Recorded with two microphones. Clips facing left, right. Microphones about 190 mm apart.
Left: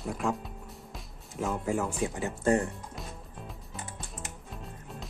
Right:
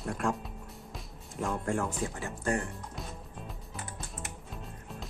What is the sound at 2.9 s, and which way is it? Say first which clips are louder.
Music: even; centre (ahead or behind).